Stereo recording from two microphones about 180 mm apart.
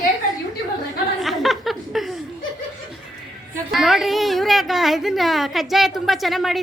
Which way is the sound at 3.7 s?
Centre (ahead or behind).